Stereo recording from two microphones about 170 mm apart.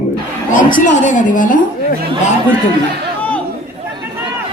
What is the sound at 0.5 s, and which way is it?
A woman's voice, 50° left (ahead or behind).